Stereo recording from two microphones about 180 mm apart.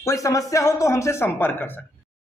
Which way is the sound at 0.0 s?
15° left (ahead or behind).